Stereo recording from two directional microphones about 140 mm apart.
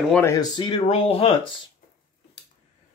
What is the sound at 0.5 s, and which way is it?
Speech, 35° left (ahead or behind).